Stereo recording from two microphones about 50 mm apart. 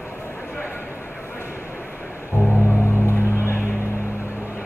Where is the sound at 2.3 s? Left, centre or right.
Left.